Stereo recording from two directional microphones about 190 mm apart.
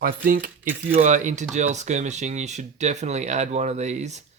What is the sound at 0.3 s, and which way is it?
Speech, 45° right (ahead or behind).